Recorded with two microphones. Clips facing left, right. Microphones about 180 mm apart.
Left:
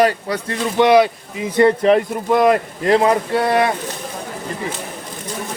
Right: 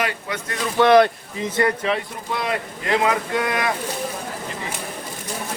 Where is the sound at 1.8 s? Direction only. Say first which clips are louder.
Left 10 dB; 50° left (ahead or behind); by 3.7 s 35° left (ahead or behind).